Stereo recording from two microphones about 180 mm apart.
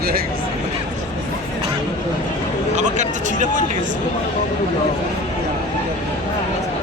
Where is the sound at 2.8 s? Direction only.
45° right (ahead or behind).